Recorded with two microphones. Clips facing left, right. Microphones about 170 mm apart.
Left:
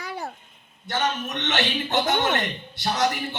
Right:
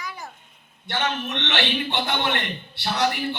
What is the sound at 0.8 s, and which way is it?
A man's voice, 40° left (ahead or behind).